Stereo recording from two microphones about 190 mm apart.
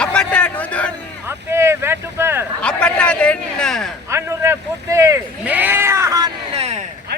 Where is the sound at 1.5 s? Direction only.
15° right (ahead or behind).